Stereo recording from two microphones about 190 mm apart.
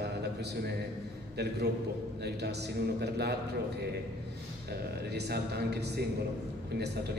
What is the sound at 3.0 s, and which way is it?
Speech, 60° right (ahead or behind).